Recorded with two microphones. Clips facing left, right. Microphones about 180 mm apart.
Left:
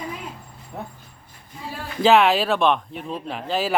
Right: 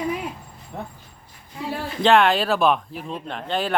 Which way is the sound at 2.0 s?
5° left (ahead or behind).